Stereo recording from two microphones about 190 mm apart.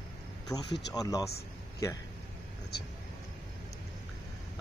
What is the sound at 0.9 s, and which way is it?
Speech, 20° left (ahead or behind).